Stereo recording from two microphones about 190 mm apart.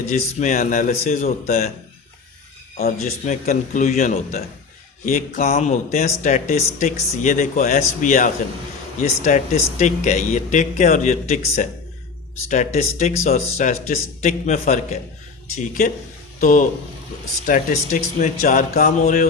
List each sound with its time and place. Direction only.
0.1 s speech: 40° left (ahead or behind)
2.7 s speech: 40° left (ahead or behind)